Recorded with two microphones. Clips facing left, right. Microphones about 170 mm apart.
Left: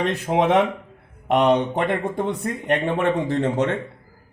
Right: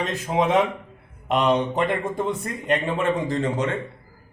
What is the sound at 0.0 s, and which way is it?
Speech, 65° left (ahead or behind).